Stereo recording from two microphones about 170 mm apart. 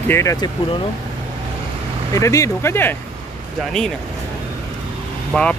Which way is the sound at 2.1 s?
20° left (ahead or behind).